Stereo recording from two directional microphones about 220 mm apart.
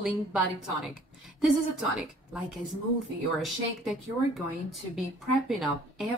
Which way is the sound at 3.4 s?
Centre (ahead or behind).